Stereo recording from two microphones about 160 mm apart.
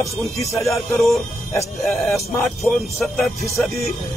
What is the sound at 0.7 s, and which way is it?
Speech, centre (ahead or behind).